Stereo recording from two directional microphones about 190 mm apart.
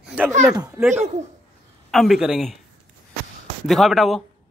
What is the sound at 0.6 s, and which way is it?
Speech, 15° right (ahead or behind).